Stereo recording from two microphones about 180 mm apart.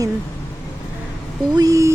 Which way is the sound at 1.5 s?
20° right (ahead or behind).